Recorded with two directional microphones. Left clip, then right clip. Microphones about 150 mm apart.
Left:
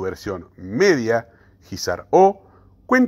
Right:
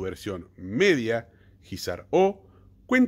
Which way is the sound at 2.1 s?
15° right (ahead or behind).